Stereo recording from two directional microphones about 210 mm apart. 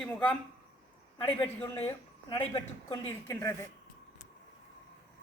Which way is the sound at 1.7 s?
25° left (ahead or behind).